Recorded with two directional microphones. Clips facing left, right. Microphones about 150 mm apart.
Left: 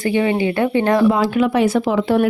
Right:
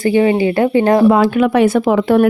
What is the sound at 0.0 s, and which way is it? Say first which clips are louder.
Speech: right 5 dB; 35° right (ahead or behind).